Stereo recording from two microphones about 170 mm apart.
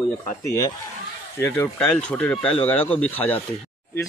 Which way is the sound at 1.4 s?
10° left (ahead or behind).